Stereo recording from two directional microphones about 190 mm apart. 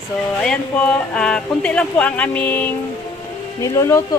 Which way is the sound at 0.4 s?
5° left (ahead or behind).